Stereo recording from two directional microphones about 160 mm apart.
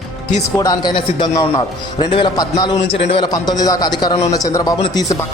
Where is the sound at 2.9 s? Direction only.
35° left (ahead or behind).